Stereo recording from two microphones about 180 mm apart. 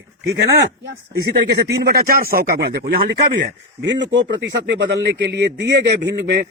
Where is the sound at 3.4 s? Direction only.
80° right.